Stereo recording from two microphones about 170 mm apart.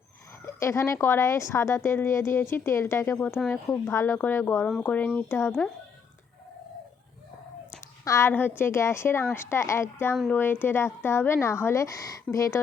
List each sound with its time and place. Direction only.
0.4 s speech: 15° left (ahead or behind)
8.0 s speech: 15° left (ahead or behind)